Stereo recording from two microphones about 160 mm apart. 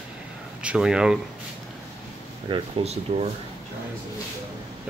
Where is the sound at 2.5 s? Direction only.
40° right (ahead or behind).